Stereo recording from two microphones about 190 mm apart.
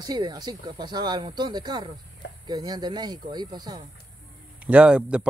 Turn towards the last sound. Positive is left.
turn(degrees=-5)  # may be behind; listen again after turning